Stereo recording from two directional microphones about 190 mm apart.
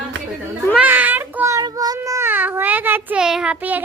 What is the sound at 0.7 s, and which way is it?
A child's voice, 10° right (ahead or behind).